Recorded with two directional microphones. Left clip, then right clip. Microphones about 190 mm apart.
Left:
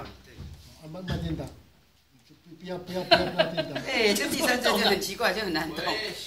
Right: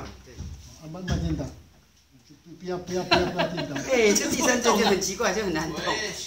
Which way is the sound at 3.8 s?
45° left (ahead or behind).